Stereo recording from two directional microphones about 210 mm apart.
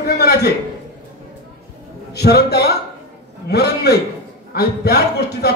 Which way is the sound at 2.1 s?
50° left (ahead or behind).